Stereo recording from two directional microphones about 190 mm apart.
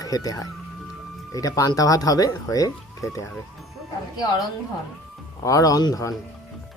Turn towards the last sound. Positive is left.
turn(degrees=20)  # may be behind; listen again after turning